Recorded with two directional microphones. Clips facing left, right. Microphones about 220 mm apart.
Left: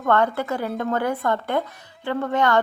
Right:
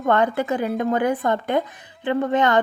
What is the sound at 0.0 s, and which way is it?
A woman's voice, 15° right (ahead or behind).